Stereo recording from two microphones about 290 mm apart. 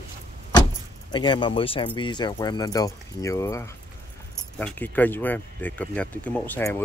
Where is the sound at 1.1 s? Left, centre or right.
Centre.